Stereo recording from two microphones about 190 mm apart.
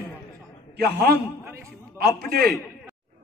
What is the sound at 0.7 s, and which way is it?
A man's voice, 60° right (ahead or behind).